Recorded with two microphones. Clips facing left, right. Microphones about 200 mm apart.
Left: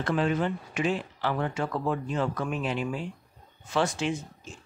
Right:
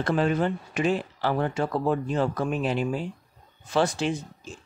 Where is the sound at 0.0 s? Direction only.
40° right (ahead or behind).